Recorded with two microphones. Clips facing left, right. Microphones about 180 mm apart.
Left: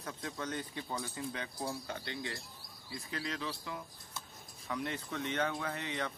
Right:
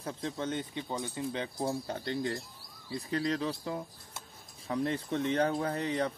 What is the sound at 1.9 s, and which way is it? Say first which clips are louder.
Speech: right 8 dB; 40° right (ahead or behind).